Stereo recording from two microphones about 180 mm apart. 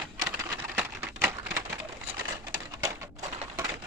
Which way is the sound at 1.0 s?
15° right (ahead or behind).